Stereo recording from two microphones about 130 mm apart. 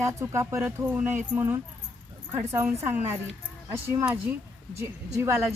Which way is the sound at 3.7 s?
20° right (ahead or behind).